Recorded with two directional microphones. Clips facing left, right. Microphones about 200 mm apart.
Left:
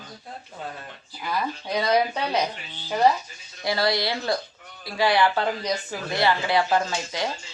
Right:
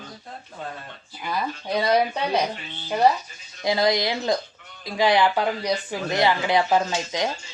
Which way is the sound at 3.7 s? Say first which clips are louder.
Right 3 dB; 20° right (ahead or behind).